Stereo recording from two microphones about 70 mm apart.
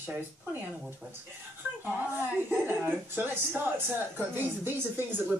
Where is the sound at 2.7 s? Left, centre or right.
Right.